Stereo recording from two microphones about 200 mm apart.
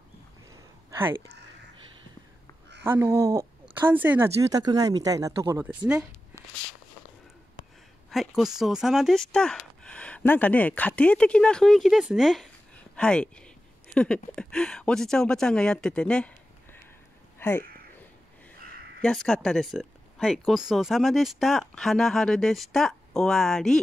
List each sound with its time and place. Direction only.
0.8 s a sound: 10° right (ahead or behind)
2.8 s speech: 10° right (ahead or behind)
8.1 s speech: centre (ahead or behind)
17.4 s speech: 10° left (ahead or behind)
18.9 s speech: 5° left (ahead or behind)